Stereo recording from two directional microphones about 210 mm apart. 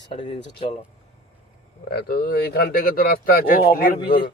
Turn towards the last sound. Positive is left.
turn(degrees=25)  # may be behind; listen again after turning